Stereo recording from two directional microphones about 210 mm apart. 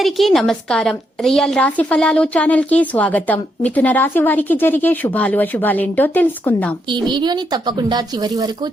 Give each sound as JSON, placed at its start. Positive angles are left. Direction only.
{"t": 0.0, "sound": "a woman's voice", "side_deg": 0}
{"t": 6.8, "sound": "speech", "side_deg": -20}